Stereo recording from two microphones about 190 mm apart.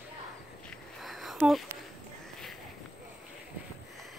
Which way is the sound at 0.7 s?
Centre (ahead or behind).